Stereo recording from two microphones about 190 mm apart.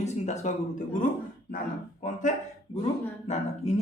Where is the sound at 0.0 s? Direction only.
40° left (ahead or behind).